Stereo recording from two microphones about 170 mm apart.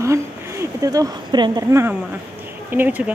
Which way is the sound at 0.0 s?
15° right (ahead or behind).